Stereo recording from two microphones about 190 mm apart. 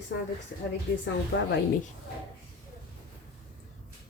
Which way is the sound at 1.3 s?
65° left (ahead or behind).